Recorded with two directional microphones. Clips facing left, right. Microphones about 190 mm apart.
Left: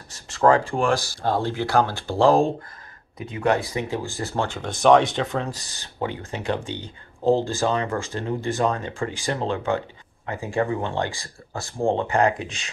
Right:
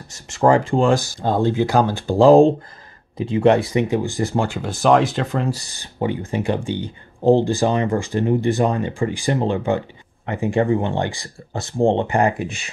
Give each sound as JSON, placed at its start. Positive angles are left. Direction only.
{"t": 0.3, "sound": "speech", "side_deg": -15}
{"t": 3.2, "sound": "speech", "side_deg": -30}
{"t": 3.9, "sound": "speech", "side_deg": -15}
{"t": 12.2, "sound": "speech", "side_deg": -5}